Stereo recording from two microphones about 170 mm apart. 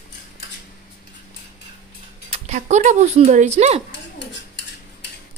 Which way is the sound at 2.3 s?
40° right (ahead or behind).